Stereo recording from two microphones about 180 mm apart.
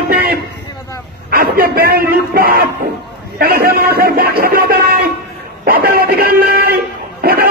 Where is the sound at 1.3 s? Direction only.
55° right (ahead or behind).